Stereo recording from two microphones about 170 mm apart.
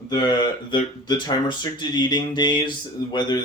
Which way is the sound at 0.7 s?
25° left (ahead or behind).